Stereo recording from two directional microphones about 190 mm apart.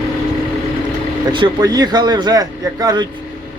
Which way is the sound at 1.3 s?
25° right (ahead or behind).